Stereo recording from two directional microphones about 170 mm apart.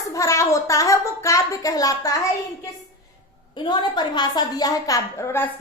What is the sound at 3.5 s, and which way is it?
A woman's voice, 25° left (ahead or behind).